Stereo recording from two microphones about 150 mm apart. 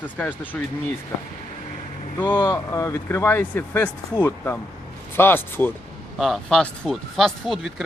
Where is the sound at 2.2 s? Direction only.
30° left (ahead or behind); by 5.7 s 15° left (ahead or behind).